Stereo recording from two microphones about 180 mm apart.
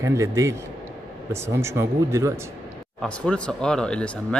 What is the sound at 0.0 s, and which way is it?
Speech, 15° right (ahead or behind).